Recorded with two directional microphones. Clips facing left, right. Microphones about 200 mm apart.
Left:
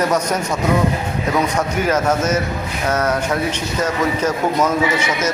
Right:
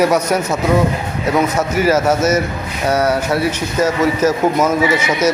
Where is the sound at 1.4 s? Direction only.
5° right (ahead or behind).